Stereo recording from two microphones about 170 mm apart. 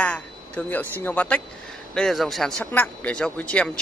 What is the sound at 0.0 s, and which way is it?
A man's voice, 10° left (ahead or behind).